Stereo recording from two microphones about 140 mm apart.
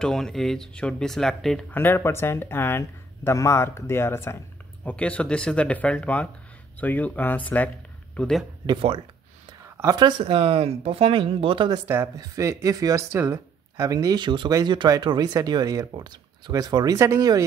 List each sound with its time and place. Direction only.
0.0 s speech: 5° left (ahead or behind)
1.7 s speech: 15° left (ahead or behind)
8.6 s speech: 40° right (ahead or behind)
9.8 s speech: 25° right (ahead or behind)
11.9 s speech: 20° right (ahead or behind)